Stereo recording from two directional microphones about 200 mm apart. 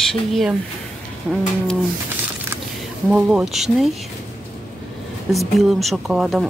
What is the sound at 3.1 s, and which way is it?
Speech, 5° right (ahead or behind).